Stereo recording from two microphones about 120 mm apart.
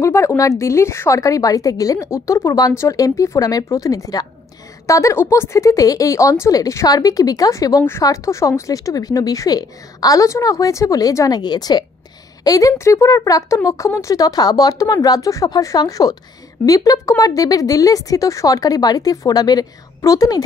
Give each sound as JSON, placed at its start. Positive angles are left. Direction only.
{"t": 0.0, "sound": "speech", "side_deg": 25}